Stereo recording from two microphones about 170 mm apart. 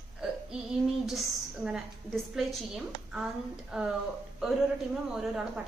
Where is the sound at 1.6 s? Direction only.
5° right (ahead or behind).